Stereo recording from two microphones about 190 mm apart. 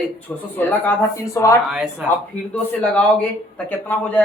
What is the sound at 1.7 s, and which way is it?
Speech, 5° right (ahead or behind).